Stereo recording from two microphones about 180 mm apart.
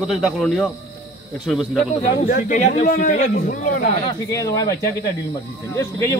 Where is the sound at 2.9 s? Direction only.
55° left (ahead or behind).